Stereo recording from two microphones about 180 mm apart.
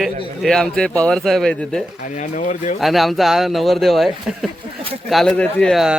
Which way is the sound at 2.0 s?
45° left (ahead or behind).